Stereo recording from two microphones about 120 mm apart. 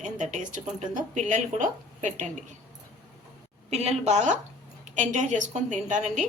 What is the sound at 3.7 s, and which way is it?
Speech, 65° right (ahead or behind).